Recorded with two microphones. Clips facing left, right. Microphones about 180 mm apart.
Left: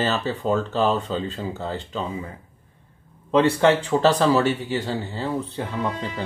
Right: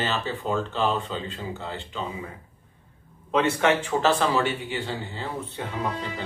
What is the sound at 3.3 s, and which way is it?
Speech, 30° left (ahead or behind).